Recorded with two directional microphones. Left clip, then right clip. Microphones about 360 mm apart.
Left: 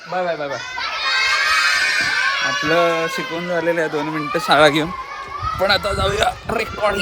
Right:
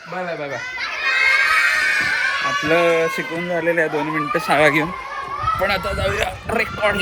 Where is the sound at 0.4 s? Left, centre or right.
Centre.